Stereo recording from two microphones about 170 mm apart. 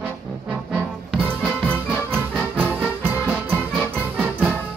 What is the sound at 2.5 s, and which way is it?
Music, 10° right (ahead or behind).